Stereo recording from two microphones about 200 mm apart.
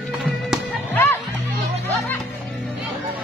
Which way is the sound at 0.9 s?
10° left (ahead or behind).